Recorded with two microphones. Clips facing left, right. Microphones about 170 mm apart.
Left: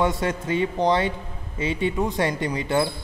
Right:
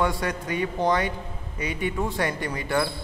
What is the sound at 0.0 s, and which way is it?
A man's voice, 25° left (ahead or behind).